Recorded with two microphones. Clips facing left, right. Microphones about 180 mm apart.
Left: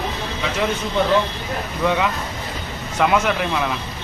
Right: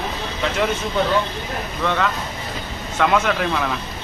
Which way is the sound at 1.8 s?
10° left (ahead or behind).